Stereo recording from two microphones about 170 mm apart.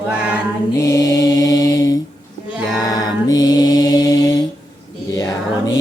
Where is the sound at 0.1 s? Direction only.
5° right (ahead or behind).